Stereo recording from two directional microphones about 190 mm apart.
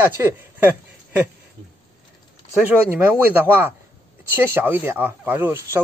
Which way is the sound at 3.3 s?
10° right (ahead or behind).